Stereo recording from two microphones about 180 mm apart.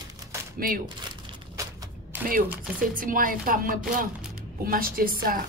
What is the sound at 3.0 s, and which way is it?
A woman's voice, 50° right (ahead or behind).